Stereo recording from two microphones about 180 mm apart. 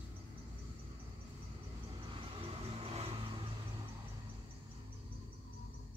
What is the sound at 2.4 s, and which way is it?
Vehicle, 30° right (ahead or behind).